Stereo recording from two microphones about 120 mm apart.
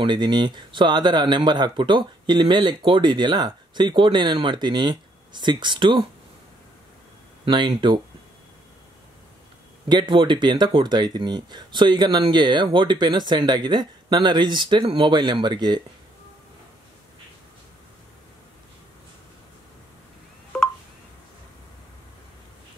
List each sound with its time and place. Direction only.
0.0 s speech: 40° right (ahead or behind)
7.4 s speech: 40° right (ahead or behind)
9.8 s speech: 40° right (ahead or behind)
20.5 s telephone dialing: 5° left (ahead or behind)